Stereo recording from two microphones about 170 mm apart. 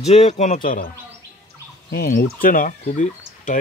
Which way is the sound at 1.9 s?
55° left (ahead or behind).